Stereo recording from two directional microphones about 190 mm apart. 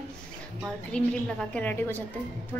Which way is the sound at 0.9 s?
5° left (ahead or behind).